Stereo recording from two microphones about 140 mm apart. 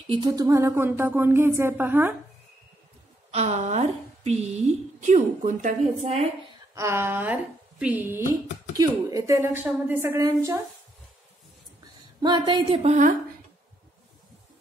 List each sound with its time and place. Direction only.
0.3 s speech: 20° right (ahead or behind)
3.3 s a woman's voice: 50° right (ahead or behind)
6.7 s a woman's voice: 20° right (ahead or behind)
11.8 s a sound: 30° right (ahead or behind)
12.8 s a woman's voice: 55° right (ahead or behind)